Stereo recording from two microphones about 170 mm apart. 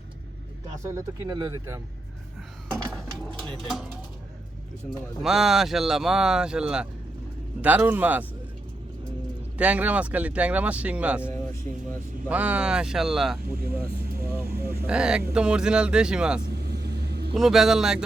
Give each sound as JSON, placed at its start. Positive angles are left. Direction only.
{"t": 0.8, "sound": "speech", "side_deg": -15}
{"t": 3.2, "sound": "speech", "side_deg": 5}
{"t": 5.2, "sound": "speech", "side_deg": 0}
{"t": 9.6, "sound": "speech", "side_deg": -10}
{"t": 12.3, "sound": "speech", "side_deg": -10}
{"t": 14.5, "sound": "vehicle", "side_deg": -65}
{"t": 14.8, "sound": "speech", "side_deg": -5}
{"t": 16.5, "sound": "vehicle", "side_deg": -70}
{"t": 17.3, "sound": "speech", "side_deg": 0}